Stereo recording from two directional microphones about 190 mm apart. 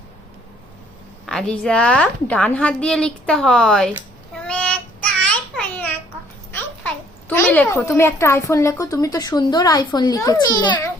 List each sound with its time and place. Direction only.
1.3 s a woman's voice: 5° left (ahead or behind)
4.4 s child singing: 5° left (ahead or behind)
5.2 s babbling: 5° left (ahead or behind)
6.5 s a child's voice: 10° left (ahead or behind)